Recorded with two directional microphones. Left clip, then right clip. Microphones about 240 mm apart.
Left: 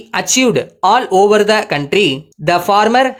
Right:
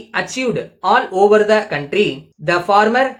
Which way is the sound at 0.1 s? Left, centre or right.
Left.